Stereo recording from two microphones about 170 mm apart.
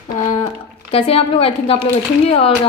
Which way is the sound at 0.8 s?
35° left (ahead or behind).